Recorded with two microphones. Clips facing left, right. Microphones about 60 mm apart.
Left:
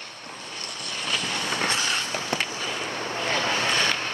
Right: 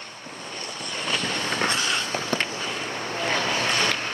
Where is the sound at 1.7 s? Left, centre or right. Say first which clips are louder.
Right 1 dB; right.